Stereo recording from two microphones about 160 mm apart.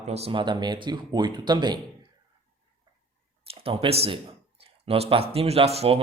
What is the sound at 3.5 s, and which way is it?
Speech, 40° right (ahead or behind).